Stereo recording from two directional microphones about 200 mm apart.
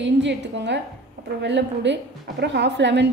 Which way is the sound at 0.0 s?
60° right (ahead or behind).